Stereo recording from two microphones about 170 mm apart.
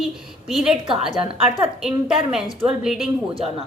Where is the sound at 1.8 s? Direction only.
5° right (ahead or behind).